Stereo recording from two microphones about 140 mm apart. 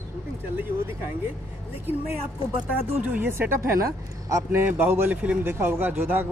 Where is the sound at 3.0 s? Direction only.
10° right (ahead or behind).